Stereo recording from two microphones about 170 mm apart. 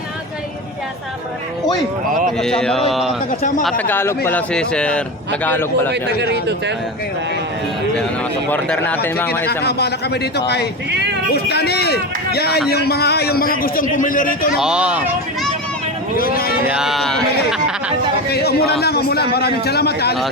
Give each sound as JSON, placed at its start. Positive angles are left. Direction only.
{"t": 2.4, "sound": "speech", "side_deg": 5}
{"t": 3.8, "sound": "speech", "side_deg": 15}
{"t": 5.9, "sound": "speech", "side_deg": -85}
{"t": 8.4, "sound": "speech", "side_deg": 10}
{"t": 9.6, "sound": "a man's voice", "side_deg": 75}
{"t": 14.5, "sound": "speech", "side_deg": -5}
{"t": 16.1, "sound": "speech", "side_deg": 60}
{"t": 16.6, "sound": "speech", "side_deg": -5}
{"t": 18.3, "sound": "a man's voice", "side_deg": 70}